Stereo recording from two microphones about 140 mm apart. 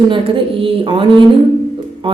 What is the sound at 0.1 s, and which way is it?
Speech, 40° right (ahead or behind).